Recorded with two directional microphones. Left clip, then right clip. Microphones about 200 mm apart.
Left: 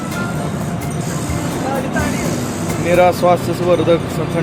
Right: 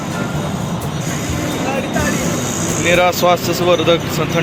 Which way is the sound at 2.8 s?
5° left (ahead or behind).